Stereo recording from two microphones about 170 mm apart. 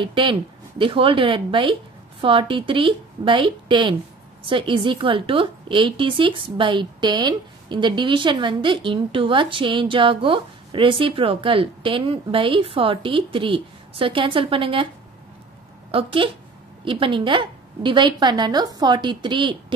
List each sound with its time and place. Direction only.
0.0 s a woman's voice: 30° right (ahead or behind)
15.9 s a woman's voice: 30° right (ahead or behind)